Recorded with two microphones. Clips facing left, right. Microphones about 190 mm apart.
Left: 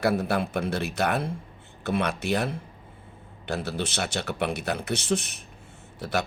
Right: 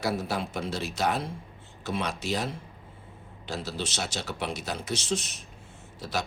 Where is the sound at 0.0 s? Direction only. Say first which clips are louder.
Left 5 dB; 55° left (ahead or behind).